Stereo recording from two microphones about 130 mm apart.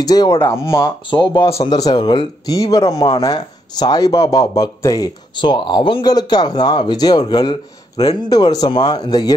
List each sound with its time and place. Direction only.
0.0 s speech: 30° left (ahead or behind)
0.8 s speech: 35° left (ahead or behind)